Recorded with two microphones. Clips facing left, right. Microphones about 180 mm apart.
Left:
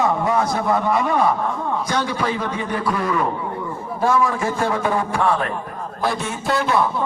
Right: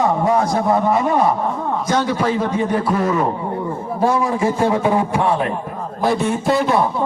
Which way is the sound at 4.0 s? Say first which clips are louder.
Right 2 dB; 30° right (ahead or behind).